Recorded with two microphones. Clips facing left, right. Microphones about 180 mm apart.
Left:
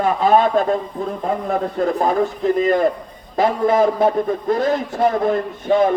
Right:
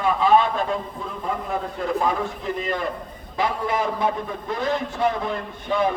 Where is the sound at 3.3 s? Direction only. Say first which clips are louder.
Left 8 dB; 45° left (ahead or behind).